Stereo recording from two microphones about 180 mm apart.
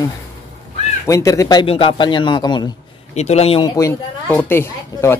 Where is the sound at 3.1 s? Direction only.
35° left (ahead or behind).